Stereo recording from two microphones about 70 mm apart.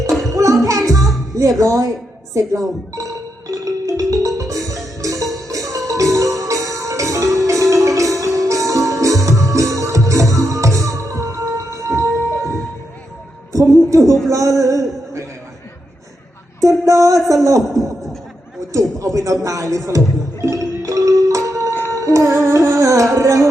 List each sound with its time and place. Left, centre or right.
0.2 s music: right
1.4 s speech: right
2.9 s music: right
13.7 s a sound: right
16.6 s a sound: right
17.2 s a man's voice: right
20.4 s music: right